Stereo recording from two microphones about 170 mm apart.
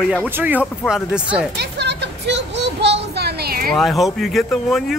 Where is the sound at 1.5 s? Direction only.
80° right; by 3.7 s 60° right (ahead or behind).